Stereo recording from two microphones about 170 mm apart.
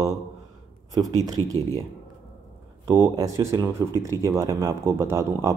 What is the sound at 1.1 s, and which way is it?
Speech, 20° right (ahead or behind).